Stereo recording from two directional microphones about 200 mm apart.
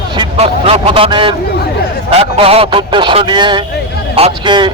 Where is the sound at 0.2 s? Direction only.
30° right (ahead or behind).